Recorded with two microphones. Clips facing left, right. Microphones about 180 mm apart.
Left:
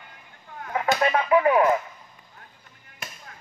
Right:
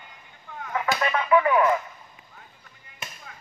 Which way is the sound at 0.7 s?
35° left (ahead or behind).